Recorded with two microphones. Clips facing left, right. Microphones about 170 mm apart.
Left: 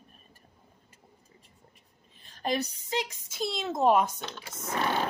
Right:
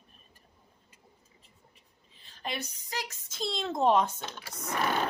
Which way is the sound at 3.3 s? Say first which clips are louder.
Left 1 dB; 5° left (ahead or behind).